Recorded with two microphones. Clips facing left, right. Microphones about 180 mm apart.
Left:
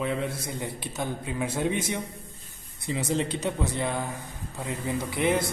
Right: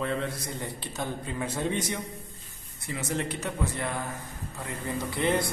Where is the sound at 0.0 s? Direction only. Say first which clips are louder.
Left 1 dB; 10° left (ahead or behind).